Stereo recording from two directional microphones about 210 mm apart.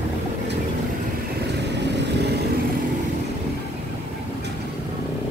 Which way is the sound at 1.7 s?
55° right (ahead or behind).